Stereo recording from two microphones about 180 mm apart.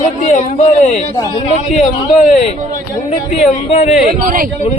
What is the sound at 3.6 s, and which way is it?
Speech, 35° left (ahead or behind).